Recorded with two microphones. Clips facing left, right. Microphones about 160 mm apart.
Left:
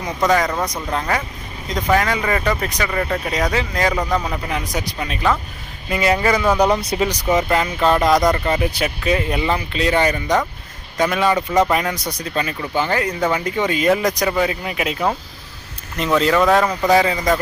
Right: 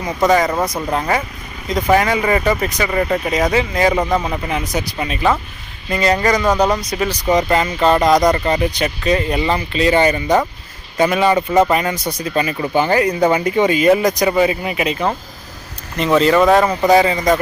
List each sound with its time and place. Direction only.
0.3 s speech: 5° right (ahead or behind)
5.9 s speech: 5° left (ahead or behind)
6.8 s speech: 25° left (ahead or behind)
7.1 s speech: 5° left (ahead or behind)
12.7 s speech: 15° right (ahead or behind)
13.7 s speech: 5° right (ahead or behind)